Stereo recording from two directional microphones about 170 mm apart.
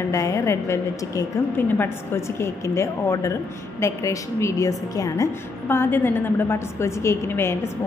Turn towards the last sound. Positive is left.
turn(degrees=15)  # may be behind; listen again after turning